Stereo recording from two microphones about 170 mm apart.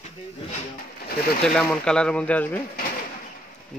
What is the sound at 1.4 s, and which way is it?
Speech, 5° left (ahead or behind).